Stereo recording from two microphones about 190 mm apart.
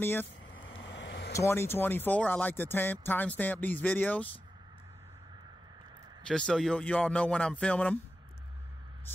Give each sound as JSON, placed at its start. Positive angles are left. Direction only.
{"t": 0.0, "sound": "speech", "side_deg": 10}
{"t": 0.7, "sound": "vehicle", "side_deg": 80}
{"t": 1.3, "sound": "speech", "side_deg": 15}
{"t": 6.2, "sound": "speech", "side_deg": 5}